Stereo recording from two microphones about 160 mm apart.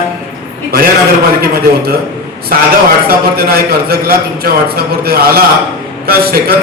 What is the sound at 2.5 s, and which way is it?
A man's voice, 65° right (ahead or behind).